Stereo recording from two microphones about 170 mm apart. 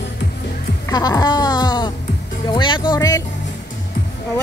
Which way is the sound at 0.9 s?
20° left (ahead or behind).